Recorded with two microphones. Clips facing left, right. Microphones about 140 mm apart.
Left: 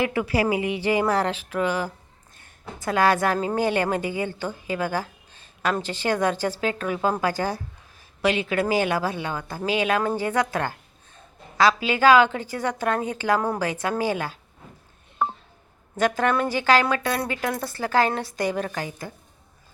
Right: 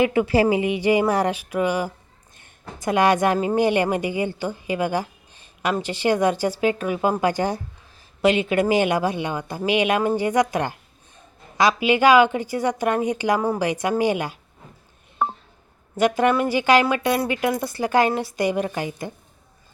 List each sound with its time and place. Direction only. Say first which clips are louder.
0.0 s a woman's voice: right 5 dB; 20° right (ahead or behind)
16.0 s a woman's voice: right 3 dB; 15° right (ahead or behind)